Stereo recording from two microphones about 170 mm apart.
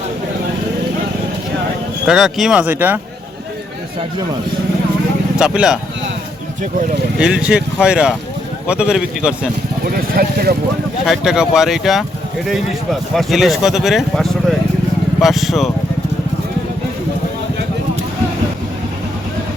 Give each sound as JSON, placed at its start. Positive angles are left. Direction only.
{"t": 2.0, "sound": "speech", "side_deg": 0}
{"t": 5.4, "sound": "speech", "side_deg": -5}
{"t": 7.2, "sound": "speech", "side_deg": -5}
{"t": 9.8, "sound": "speech", "side_deg": -65}
{"t": 11.0, "sound": "speech", "side_deg": -5}
{"t": 13.1, "sound": "speech", "side_deg": 0}